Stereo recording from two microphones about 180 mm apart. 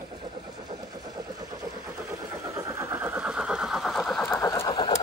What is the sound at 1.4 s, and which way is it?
Vehicle, 20° right (ahead or behind).